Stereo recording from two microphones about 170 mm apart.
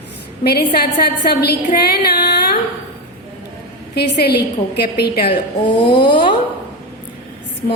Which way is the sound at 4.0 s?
75° left (ahead or behind).